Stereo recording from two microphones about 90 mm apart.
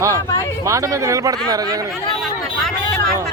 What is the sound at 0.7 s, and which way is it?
Speech, 35° right (ahead or behind).